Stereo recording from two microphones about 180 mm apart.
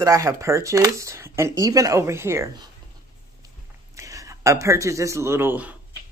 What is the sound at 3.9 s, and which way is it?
Speech, 20° right (ahead or behind).